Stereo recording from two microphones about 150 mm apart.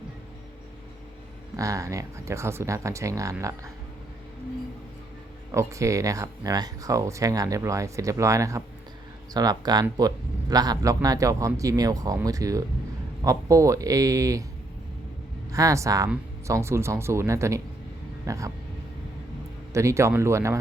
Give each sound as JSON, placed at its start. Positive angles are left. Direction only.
{"t": 1.5, "sound": "speech", "side_deg": -20}
{"t": 5.5, "sound": "speech", "side_deg": -20}
{"t": 15.5, "sound": "speech", "side_deg": -20}
{"t": 19.7, "sound": "speech", "side_deg": -20}